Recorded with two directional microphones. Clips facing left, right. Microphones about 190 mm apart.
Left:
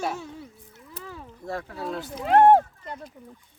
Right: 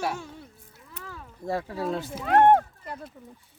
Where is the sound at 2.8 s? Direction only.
5° right (ahead or behind).